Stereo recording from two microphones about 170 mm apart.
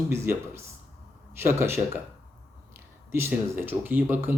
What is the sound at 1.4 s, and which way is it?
Speech, 15° right (ahead or behind).